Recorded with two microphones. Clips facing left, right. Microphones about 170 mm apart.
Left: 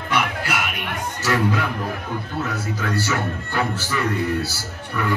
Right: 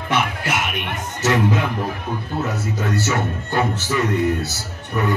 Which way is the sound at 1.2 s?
20° right (ahead or behind).